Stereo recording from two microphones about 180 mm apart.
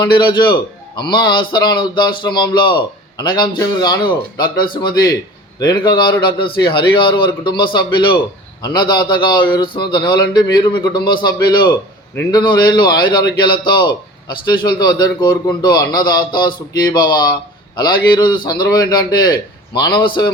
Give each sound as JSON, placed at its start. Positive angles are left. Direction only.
{"t": 0.0, "sound": "a man's voice", "side_deg": 25}